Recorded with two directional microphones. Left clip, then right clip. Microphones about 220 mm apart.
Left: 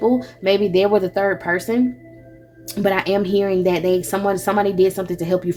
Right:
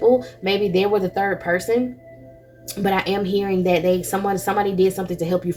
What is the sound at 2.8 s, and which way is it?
Speech, 35° left (ahead or behind).